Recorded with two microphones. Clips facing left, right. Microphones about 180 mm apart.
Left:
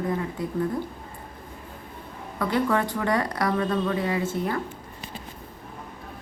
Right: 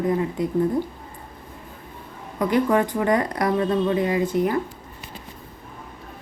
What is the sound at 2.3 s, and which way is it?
Speech, 20° right (ahead or behind).